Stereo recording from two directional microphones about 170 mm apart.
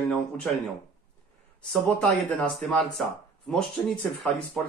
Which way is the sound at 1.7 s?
5° left (ahead or behind).